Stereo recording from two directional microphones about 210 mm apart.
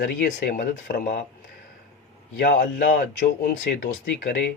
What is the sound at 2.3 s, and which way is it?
Speech, 50° left (ahead or behind).